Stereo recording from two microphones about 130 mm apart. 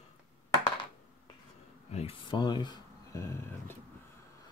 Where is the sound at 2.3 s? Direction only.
35° left (ahead or behind).